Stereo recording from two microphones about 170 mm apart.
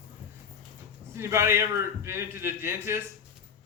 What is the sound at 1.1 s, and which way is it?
A man's voice, 15° right (ahead or behind).